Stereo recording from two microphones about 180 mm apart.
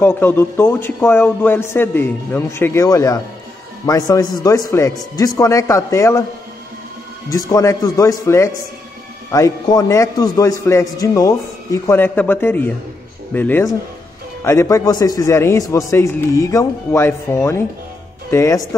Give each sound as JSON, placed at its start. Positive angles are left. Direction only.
{"t": 0.0, "sound": "a man's voice", "side_deg": 10}
{"t": 7.2, "sound": "a man's voice", "side_deg": 20}